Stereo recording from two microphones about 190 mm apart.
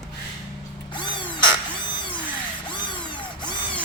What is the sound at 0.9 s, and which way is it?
Crow, 25° left (ahead or behind).